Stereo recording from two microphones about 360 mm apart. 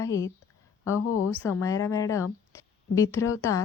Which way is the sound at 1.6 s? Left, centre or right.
Centre.